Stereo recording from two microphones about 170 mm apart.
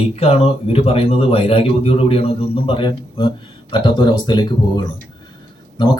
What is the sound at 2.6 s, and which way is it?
Speech, 30° left (ahead or behind).